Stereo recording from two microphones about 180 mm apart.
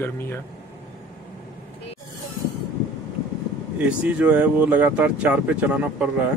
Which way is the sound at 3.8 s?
10° right (ahead or behind).